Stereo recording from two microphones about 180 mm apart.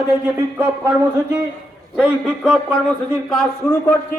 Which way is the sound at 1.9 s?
Centre (ahead or behind).